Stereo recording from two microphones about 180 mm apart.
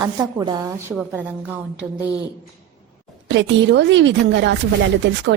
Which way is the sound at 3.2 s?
80° right.